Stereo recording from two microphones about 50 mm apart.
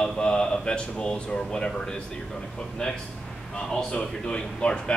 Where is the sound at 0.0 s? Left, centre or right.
Centre.